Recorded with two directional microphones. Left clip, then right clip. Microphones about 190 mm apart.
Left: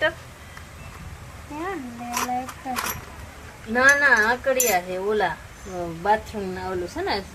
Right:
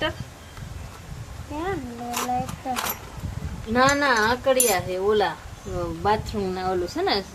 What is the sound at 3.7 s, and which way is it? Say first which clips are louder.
Speech: left 3 dB; 10° right (ahead or behind).